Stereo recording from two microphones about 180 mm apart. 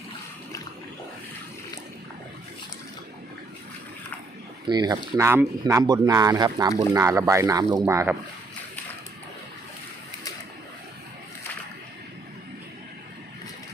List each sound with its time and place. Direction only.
4.6 s speech: 25° right (ahead or behind)